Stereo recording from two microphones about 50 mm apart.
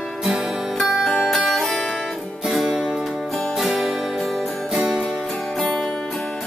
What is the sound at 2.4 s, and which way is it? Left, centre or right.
Music, centre.